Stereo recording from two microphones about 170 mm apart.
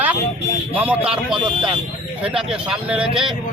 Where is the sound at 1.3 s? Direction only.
30° right (ahead or behind).